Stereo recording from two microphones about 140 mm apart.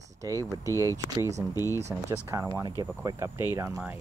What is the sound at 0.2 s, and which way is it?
Speech, 25° right (ahead or behind).